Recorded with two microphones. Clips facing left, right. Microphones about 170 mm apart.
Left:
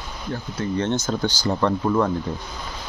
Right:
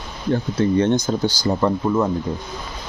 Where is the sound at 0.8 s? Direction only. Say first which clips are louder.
Right 4 dB; 15° right (ahead or behind).